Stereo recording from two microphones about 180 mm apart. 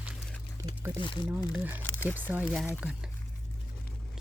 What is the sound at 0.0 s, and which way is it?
Music, 5° right (ahead or behind).